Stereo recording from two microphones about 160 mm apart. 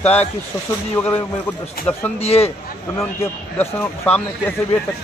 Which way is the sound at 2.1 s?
40° left (ahead or behind).